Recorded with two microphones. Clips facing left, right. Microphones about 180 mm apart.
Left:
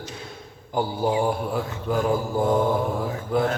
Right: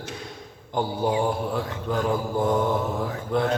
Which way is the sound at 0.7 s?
5° left (ahead or behind).